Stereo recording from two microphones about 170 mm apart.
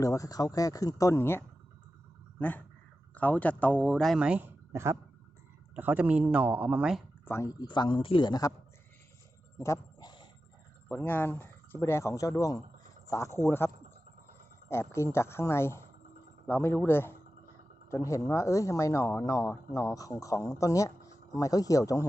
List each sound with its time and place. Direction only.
0.0 s speech: 20° left (ahead or behind); by 7.0 s 5° right (ahead or behind)
7.3 s speech: 15° left (ahead or behind)
9.6 s dog: 15° left (ahead or behind)
10.8 s speech: 10° left (ahead or behind)
14.7 s speech: 15° left (ahead or behind)